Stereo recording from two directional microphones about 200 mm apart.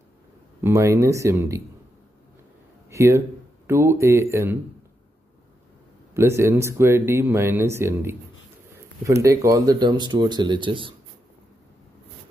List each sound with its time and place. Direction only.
0.6 s speech: 15° right (ahead or behind)
2.9 s speech: 15° right (ahead or behind)
6.1 s speech: 15° right (ahead or behind)
9.2 s speech: 15° right (ahead or behind)